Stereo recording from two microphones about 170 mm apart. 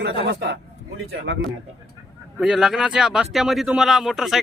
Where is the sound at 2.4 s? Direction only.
Centre (ahead or behind).